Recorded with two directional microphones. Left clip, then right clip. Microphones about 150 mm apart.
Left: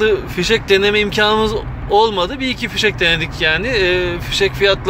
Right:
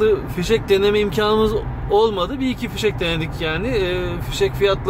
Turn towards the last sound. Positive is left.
turn(degrees=-10)  # may be behind; listen again after turning